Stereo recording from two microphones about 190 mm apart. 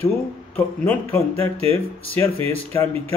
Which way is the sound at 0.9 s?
10° left (ahead or behind).